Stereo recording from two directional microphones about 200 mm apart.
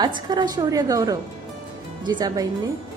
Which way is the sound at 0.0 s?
20° right (ahead or behind).